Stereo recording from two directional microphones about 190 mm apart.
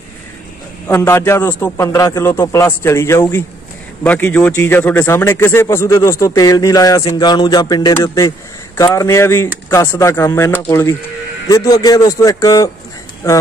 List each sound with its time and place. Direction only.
0.8 s a man's voice: 15° left (ahead or behind)